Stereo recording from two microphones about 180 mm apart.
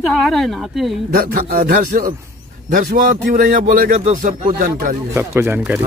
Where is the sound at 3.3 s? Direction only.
45° right (ahead or behind).